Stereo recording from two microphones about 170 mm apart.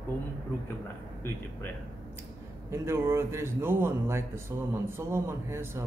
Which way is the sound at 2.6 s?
15° right (ahead or behind).